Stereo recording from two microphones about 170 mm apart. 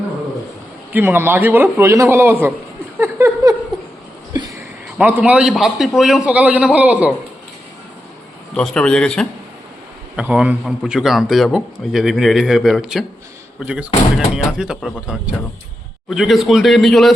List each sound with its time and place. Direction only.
0.9 s a man's voice: 10° right (ahead or behind)
3.0 s a sound: 15° right (ahead or behind)
4.9 s a man's voice: 10° right (ahead or behind)
8.5 s a man's voice: 5° left (ahead or behind)
10.2 s a man's voice: 5° right (ahead or behind)